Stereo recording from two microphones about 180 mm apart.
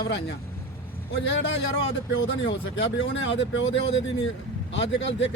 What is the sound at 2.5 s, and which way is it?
Speech, 85° left.